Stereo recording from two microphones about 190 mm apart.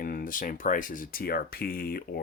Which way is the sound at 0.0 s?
45° left (ahead or behind).